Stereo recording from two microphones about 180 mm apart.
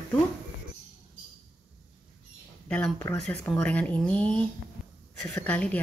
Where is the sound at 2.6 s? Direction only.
5° left (ahead or behind).